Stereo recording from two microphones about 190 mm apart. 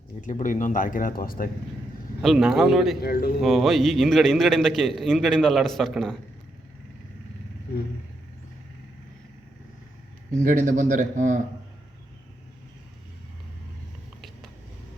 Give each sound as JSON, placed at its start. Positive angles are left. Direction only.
{"t": 0.2, "sound": "speech", "side_deg": 40}
{"t": 2.2, "sound": "a man's voice", "side_deg": 0}
{"t": 3.0, "sound": "speech", "side_deg": 55}
{"t": 3.4, "sound": "a man's voice", "side_deg": 0}
{"t": 10.4, "sound": "speech", "side_deg": -40}